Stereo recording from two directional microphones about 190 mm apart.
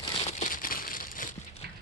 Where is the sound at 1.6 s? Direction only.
55° right (ahead or behind).